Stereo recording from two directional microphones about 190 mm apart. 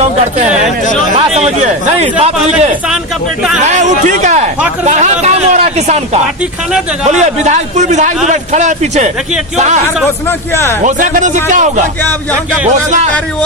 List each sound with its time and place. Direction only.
1.3 s a man's voice: 35° right (ahead or behind)
3.6 s a man's voice: 40° right (ahead or behind)
7.1 s a man's voice: 40° right (ahead or behind)
10.8 s a man's voice: 45° right (ahead or behind)